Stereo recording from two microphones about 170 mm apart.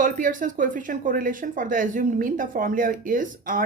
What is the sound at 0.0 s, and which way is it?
Speech, 50° right (ahead or behind).